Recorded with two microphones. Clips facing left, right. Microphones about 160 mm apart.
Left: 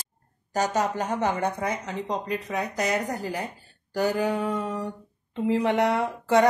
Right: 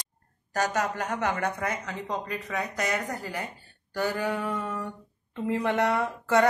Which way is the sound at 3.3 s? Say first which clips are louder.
Left 4 dB; 20° left (ahead or behind).